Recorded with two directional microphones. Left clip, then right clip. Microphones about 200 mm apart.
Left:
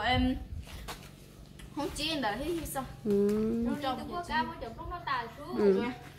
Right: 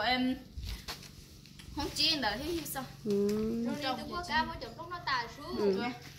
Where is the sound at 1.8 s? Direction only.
Centre (ahead or behind).